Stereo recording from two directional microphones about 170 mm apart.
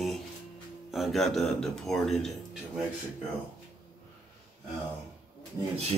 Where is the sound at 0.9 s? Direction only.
Centre (ahead or behind).